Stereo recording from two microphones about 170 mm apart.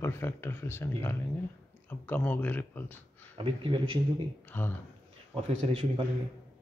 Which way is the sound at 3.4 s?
30° right (ahead or behind).